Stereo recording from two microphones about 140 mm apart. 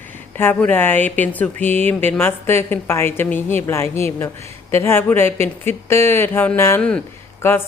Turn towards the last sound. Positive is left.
turn(degrees=15)  # may be behind; listen again after turning